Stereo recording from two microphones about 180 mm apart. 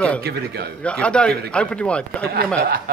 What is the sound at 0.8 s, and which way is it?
Speech, 5° left (ahead or behind).